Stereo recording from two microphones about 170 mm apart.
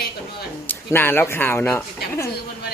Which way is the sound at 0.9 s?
15° left (ahead or behind).